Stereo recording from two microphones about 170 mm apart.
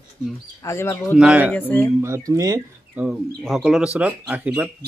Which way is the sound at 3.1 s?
Centre (ahead or behind).